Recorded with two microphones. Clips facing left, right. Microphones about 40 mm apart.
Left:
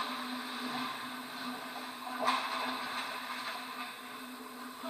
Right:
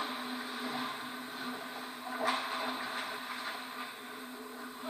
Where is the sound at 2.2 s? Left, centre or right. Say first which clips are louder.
Left 1 dB; left.